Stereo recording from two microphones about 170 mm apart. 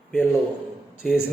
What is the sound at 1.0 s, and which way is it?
Speech, 5° left (ahead or behind).